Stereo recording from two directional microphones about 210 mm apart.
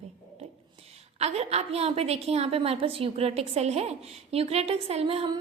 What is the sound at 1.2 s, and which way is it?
A woman's voice, 30° right (ahead or behind).